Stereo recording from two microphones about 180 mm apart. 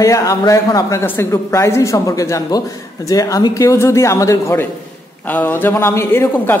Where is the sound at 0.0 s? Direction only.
20° left (ahead or behind).